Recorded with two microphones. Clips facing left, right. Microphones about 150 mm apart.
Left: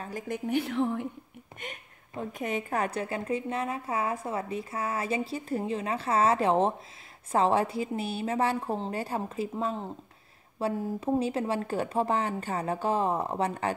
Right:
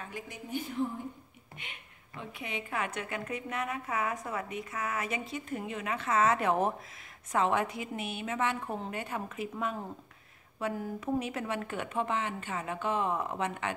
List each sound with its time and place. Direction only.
0.3 s a woman's voice: 75° left (ahead or behind)
1.6 s a woman's voice: 45° left (ahead or behind)